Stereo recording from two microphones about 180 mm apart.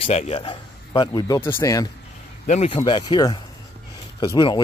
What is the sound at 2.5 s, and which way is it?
Speech, 40° left (ahead or behind).